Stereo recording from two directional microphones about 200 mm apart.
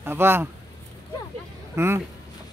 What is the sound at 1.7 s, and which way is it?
Speech, 10° right (ahead or behind).